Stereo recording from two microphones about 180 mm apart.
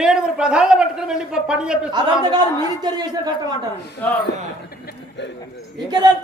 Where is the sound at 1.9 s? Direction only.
20° right (ahead or behind).